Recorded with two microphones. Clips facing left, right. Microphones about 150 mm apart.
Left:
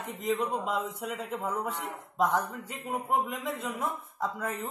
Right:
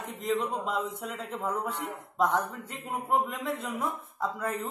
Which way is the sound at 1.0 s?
Centre (ahead or behind).